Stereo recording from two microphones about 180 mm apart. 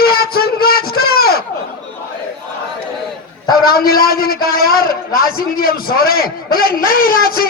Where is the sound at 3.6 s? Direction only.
55° left (ahead or behind).